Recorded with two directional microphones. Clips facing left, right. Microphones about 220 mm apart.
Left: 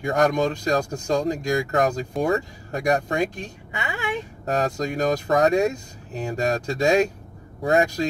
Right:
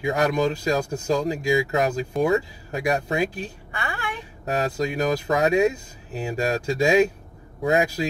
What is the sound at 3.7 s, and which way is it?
Speech, 20° left (ahead or behind).